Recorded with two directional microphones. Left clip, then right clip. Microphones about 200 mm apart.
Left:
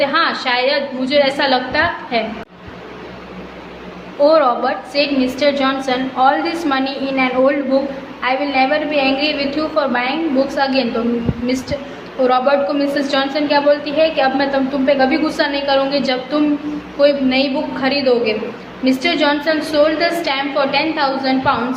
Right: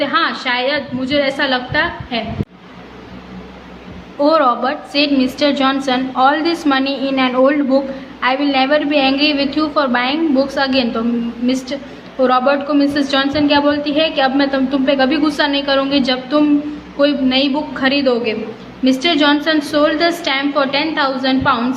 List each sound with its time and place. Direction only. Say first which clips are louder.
0.0 s a woman's voice: left 1 dB; 20° right (ahead or behind)
4.2 s a woman's voice: left 1 dB; 25° right (ahead or behind)
12.2 s a woman's voice: even; 30° right (ahead or behind)